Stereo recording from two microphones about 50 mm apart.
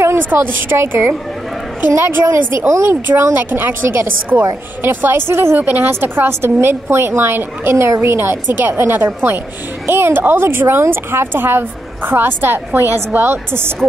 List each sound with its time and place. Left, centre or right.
0.4 s speech: right
3.1 s speech: right
5.6 s speech: right
7.7 s a woman's voice: right
8.0 s speech: right